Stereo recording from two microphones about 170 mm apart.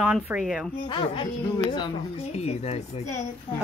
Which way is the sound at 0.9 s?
30° left (ahead or behind).